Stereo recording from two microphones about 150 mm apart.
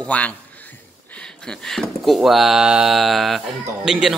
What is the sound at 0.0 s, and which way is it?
A man's voice, 10° left (ahead or behind).